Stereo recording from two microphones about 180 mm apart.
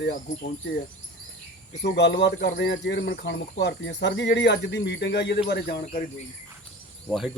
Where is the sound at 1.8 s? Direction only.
75° left (ahead or behind).